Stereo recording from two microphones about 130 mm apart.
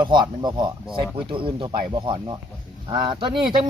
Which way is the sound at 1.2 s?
40° right (ahead or behind).